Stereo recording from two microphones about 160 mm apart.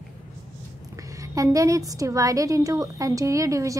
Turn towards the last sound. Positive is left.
turn(degrees=-20)  # may be behind; listen again after turning